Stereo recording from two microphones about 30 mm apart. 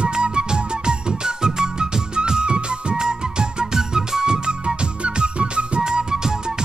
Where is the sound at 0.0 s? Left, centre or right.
Right.